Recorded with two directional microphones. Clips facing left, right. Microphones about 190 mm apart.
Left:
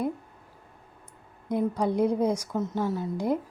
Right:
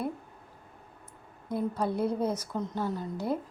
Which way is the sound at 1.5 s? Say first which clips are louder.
Left 4 dB; 15° left (ahead or behind).